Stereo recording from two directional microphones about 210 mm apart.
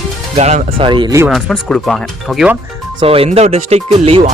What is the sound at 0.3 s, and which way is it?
Speech, 30° right (ahead or behind).